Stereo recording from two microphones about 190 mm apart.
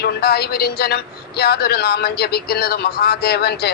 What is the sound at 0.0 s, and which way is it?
Speech, 55° left (ahead or behind).